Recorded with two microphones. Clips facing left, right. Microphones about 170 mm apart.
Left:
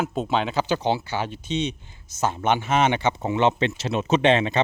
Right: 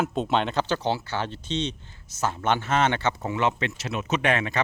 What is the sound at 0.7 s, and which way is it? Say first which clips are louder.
Speech: left 3 dB; 15° left (ahead or behind).